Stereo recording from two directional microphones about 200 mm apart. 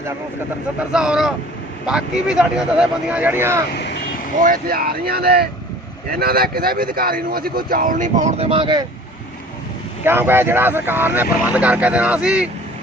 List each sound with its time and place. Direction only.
0.8 s speech: 5° right (ahead or behind)
4.4 s speech: 45° right (ahead or behind); by 8.9 s 20° right (ahead or behind)
10.0 s speech: 10° right (ahead or behind)